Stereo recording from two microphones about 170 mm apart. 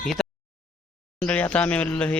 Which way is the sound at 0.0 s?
Centre (ahead or behind).